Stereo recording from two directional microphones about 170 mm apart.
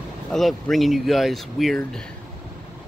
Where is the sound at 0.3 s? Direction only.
Centre (ahead or behind).